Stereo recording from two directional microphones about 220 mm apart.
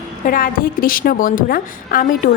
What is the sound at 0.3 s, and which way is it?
A woman's voice, 40° left (ahead or behind).